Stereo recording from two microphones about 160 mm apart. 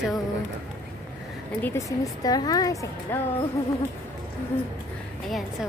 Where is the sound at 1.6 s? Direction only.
20° left (ahead or behind).